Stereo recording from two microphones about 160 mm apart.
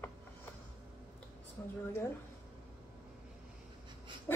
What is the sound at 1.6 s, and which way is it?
Speech, 15° left (ahead or behind).